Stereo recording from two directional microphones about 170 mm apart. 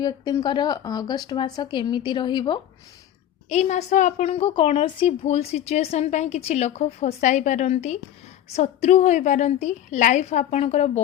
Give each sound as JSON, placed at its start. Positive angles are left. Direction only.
{"t": 0.0, "sound": "speech", "side_deg": 25}
{"t": 3.5, "sound": "a woman's voice", "side_deg": 40}